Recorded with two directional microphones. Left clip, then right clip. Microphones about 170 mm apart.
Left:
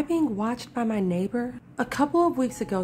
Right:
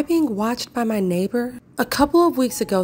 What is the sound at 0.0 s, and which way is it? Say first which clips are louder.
A woman's voice: right 5 dB; 20° right (ahead or behind).